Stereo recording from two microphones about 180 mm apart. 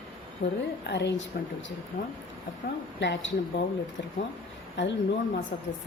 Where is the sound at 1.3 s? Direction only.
60° left (ahead or behind).